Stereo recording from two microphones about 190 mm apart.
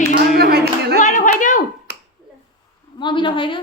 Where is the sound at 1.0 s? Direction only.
40° left (ahead or behind).